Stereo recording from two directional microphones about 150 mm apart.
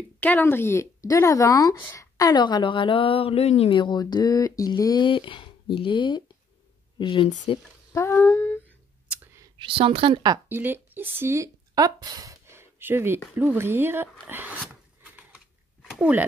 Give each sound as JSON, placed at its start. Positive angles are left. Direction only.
{"t": 0.2, "sound": "speech", "side_deg": 10}
{"t": 7.9, "sound": "humming", "side_deg": 15}
{"t": 9.1, "sound": "clicking", "side_deg": -15}
{"t": 9.6, "sound": "a woman's voice", "side_deg": -35}
{"t": 10.5, "sound": "speech", "side_deg": -15}
{"t": 13.3, "sound": "a sound", "side_deg": -15}